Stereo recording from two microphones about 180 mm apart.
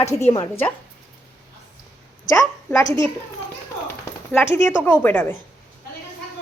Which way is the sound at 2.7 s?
15° left (ahead or behind).